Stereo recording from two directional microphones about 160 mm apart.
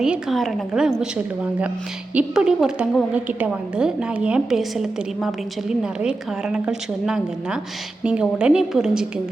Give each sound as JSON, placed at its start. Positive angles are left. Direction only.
{"t": 0.0, "sound": "a woman's voice", "side_deg": -5}